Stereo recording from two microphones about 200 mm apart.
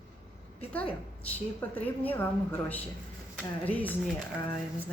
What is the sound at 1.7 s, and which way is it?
A woman's voice, 10° left (ahead or behind).